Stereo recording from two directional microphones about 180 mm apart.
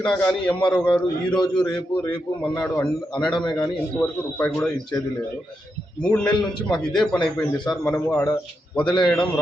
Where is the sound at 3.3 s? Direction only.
25° left (ahead or behind).